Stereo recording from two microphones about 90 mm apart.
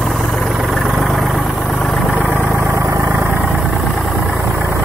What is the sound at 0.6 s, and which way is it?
Vehicle, centre (ahead or behind).